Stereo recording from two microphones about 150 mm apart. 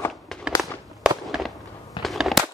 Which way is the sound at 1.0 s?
Centre (ahead or behind).